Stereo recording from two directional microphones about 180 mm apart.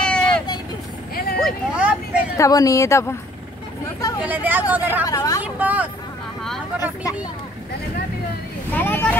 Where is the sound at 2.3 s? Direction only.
20° left (ahead or behind).